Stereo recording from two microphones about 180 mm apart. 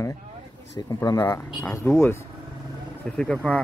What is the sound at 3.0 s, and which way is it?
Speech, 5° left (ahead or behind).